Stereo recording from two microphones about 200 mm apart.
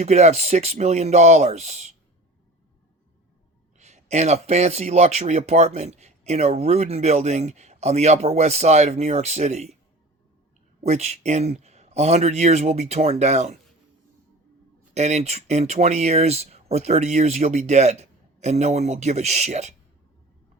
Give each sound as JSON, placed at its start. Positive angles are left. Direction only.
{"t": 0.0, "sound": "speech", "side_deg": -35}
{"t": 3.8, "sound": "speech", "side_deg": -35}
{"t": 10.8, "sound": "speech", "side_deg": -35}
{"t": 14.9, "sound": "speech", "side_deg": -35}